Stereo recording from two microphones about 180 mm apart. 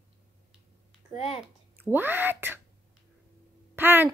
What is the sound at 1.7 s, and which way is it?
Speech, 10° right (ahead or behind).